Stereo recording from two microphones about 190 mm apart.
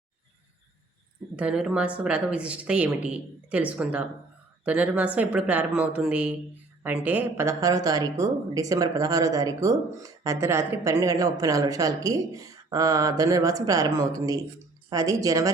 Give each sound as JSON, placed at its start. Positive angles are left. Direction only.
{"t": 1.4, "sound": "speech", "side_deg": -5}